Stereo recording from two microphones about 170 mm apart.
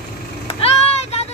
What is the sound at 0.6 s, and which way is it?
Child singing, 35° left (ahead or behind).